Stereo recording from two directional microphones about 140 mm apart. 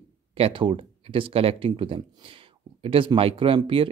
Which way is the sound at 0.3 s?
40° right (ahead or behind).